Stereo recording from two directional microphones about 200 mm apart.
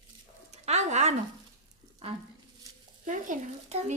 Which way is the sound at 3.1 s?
35° right (ahead or behind).